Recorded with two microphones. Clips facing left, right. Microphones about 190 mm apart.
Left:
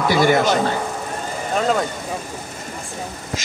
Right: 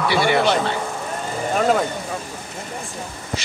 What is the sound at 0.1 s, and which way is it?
Speech, 45° left (ahead or behind).